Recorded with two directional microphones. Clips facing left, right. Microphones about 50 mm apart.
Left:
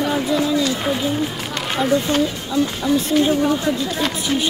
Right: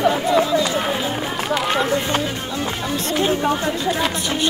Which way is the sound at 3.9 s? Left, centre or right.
Centre.